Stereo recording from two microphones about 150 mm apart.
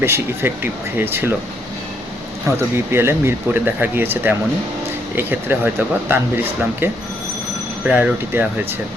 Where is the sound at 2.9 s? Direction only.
15° right (ahead or behind).